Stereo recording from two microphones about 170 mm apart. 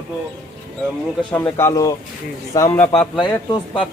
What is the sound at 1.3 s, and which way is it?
Speech, 15° left (ahead or behind).